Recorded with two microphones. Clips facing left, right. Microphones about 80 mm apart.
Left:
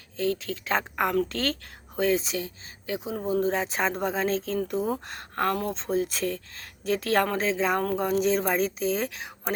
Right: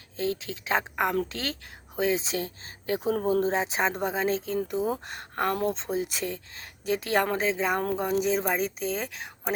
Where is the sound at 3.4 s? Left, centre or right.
Right.